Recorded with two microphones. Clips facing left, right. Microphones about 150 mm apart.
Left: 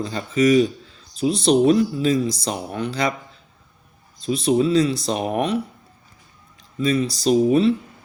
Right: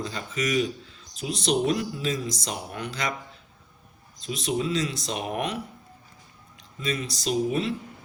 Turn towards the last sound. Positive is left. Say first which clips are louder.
# left 9 dB
turn(degrees=35)  # may be behind; listen again after turning